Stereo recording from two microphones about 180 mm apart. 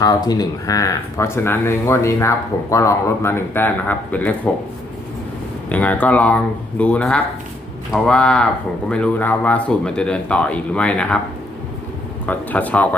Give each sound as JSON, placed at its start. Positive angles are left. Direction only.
{"t": 0.0, "sound": "speech", "side_deg": 20}
{"t": 5.6, "sound": "speech", "side_deg": 10}
{"t": 12.2, "sound": "speech", "side_deg": 10}